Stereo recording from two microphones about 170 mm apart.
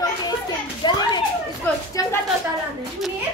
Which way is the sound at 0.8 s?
25° left (ahead or behind).